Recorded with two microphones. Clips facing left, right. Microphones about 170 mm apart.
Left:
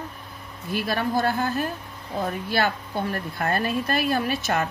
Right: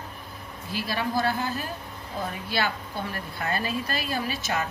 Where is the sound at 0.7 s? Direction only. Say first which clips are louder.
Left 3 dB; 55° left (ahead or behind).